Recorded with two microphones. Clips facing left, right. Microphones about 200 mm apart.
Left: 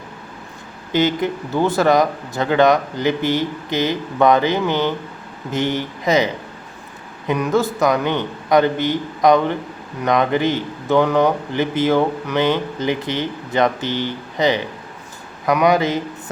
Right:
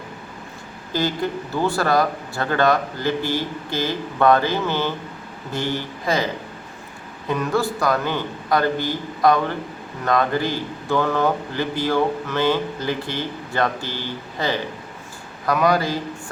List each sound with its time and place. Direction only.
0.9 s speech: 20° left (ahead or behind)
7.3 s speech: 20° left (ahead or behind)